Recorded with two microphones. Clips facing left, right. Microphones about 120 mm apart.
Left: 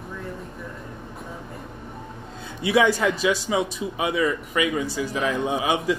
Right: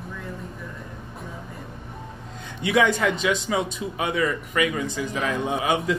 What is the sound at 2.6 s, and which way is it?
A man's voice, 30° left (ahead or behind).